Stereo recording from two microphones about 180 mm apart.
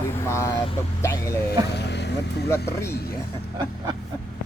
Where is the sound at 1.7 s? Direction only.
70° left (ahead or behind).